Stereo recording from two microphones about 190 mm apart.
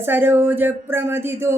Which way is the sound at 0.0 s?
10° right (ahead or behind).